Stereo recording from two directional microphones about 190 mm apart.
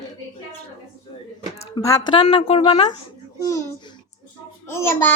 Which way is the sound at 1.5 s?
30° left (ahead or behind).